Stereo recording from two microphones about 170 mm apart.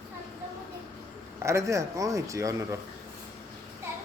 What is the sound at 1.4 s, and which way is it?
Speech, 15° right (ahead or behind).